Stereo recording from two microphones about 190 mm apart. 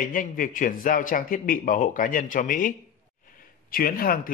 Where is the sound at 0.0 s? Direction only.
45° left (ahead or behind).